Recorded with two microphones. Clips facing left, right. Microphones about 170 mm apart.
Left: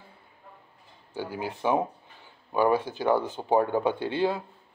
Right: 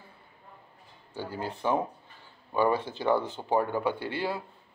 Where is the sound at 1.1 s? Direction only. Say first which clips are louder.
Left 2 dB; 15° left (ahead or behind).